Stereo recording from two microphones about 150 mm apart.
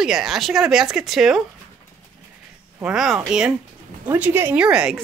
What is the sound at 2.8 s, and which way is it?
A woman's voice, 5° right (ahead or behind).